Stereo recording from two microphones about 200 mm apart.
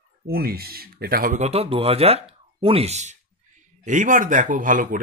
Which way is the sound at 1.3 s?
30° right (ahead or behind).